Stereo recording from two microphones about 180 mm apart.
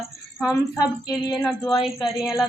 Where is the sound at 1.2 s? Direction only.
20° left (ahead or behind).